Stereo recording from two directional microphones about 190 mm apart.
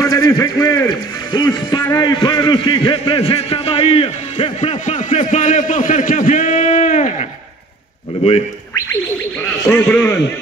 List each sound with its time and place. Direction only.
0.0 s a man's voice: 15° left (ahead or behind); by 7.2 s 40° left (ahead or behind)
9.4 s a man's voice: 5° left (ahead or behind)